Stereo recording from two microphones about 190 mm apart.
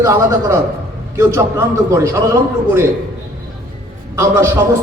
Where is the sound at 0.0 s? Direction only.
15° right (ahead or behind).